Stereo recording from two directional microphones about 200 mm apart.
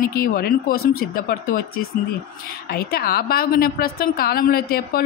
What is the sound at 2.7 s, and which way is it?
A woman's voice, 50° left (ahead or behind).